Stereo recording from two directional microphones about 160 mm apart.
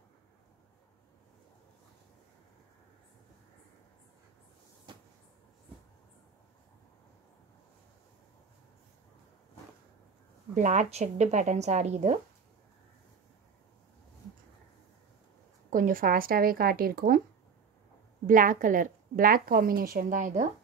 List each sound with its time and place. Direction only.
4.9 s cupboard open or close: 30° right (ahead or behind)
10.5 s speech: 50° right (ahead or behind)
15.7 s a woman's voice: 60° right (ahead or behind)
18.2 s a woman's voice: 55° right (ahead or behind)